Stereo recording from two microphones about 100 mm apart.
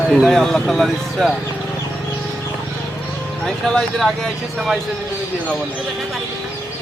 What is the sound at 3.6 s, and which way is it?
Speech, 5° left (ahead or behind).